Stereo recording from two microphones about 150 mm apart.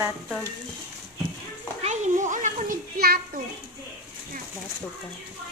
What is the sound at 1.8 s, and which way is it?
Children playing, 55° right (ahead or behind).